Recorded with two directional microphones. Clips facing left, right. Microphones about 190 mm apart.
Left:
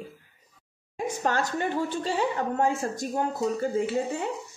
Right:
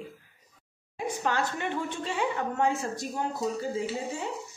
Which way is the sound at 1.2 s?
40° left (ahead or behind).